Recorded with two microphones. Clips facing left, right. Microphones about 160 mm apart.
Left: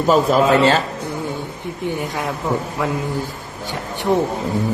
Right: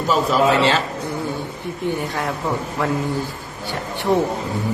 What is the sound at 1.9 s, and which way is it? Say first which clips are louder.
Speech: even; 15° left (ahead or behind).